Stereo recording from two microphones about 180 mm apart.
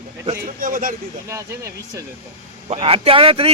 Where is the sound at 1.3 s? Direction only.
15° right (ahead or behind).